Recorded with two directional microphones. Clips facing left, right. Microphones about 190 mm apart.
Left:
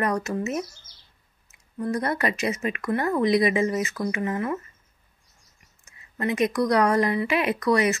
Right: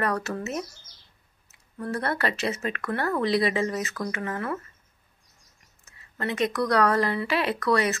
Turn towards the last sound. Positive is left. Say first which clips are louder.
# left 2 dB
turn(degrees=20)  # may be behind; listen again after turning